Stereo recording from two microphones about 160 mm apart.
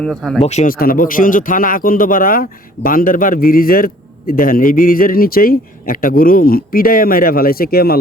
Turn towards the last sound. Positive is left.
turn(degrees=70)  # may be behind; listen again after turning